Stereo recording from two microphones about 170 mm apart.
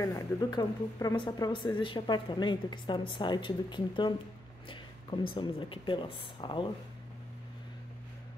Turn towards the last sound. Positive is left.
turn(degrees=30)  # may be behind; listen again after turning